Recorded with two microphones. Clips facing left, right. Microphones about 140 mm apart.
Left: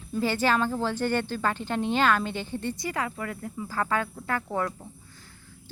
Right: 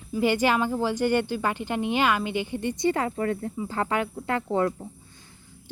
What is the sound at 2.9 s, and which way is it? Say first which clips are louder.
Speech: right 6 dB; 30° right (ahead or behind).